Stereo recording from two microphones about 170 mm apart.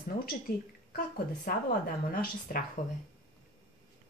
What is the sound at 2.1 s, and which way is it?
Speech, 60° left (ahead or behind).